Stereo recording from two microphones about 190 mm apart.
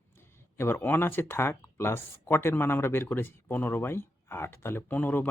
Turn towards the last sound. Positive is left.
turn(degrees=10)  # may be behind; listen again after turning